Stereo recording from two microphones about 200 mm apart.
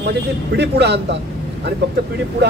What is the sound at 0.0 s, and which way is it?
A man's voice, 55° right (ahead or behind).